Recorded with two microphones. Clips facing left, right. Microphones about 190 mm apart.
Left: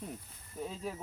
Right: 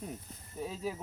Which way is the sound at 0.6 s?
5° right (ahead or behind).